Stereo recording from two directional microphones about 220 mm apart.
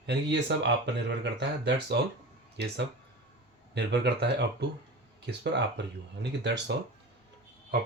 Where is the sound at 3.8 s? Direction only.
50° right (ahead or behind).